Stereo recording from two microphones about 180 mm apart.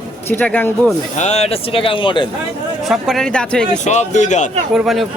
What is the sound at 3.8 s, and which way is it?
Speech, 40° left (ahead or behind).